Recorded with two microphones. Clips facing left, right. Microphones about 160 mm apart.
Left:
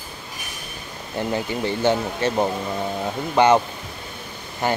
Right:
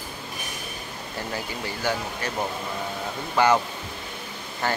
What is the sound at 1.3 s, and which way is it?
Speech, 25° left (ahead or behind).